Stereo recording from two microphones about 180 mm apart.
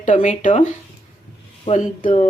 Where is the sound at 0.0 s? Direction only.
45° left (ahead or behind).